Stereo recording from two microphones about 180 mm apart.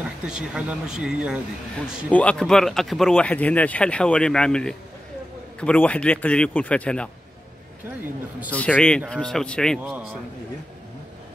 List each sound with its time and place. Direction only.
0.3 s speech: 5° right (ahead or behind)
2.0 s speech: 5° left (ahead or behind)
8.5 s speech: 5° left (ahead or behind)
9.8 s a man's voice: 5° right (ahead or behind)